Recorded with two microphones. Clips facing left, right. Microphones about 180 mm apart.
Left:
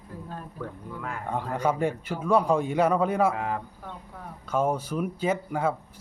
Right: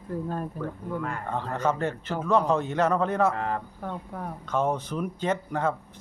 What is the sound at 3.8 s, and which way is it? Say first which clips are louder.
Speech: right 7 dB; 50° right (ahead or behind).